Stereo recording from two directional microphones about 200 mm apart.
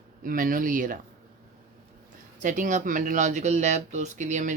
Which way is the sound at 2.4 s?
40° right (ahead or behind).